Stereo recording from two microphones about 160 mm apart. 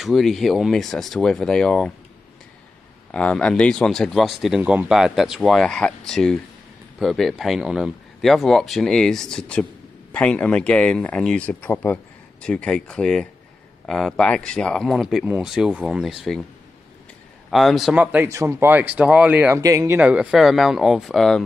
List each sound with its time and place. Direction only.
0.0 s speech: centre (ahead or behind)
3.1 s speech: 5° left (ahead or behind)
17.5 s speech: centre (ahead or behind)
19.6 s speech: 20° right (ahead or behind)
20.0 s speech: 10° right (ahead or behind)